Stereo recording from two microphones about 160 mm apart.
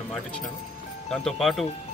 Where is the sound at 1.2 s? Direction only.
Centre (ahead or behind).